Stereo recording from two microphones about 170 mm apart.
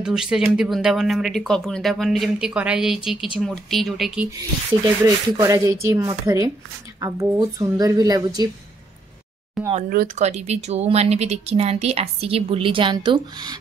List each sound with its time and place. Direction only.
0.0 s speech: 5° right (ahead or behind)
5.0 s speech: 20° right (ahead or behind)
9.8 s speech: 50° right (ahead or behind); by 13.6 s 25° right (ahead or behind)